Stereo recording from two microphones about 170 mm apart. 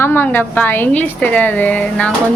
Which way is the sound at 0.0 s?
15° left (ahead or behind).